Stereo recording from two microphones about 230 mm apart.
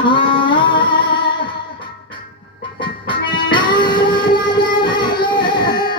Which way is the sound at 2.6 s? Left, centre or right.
Left.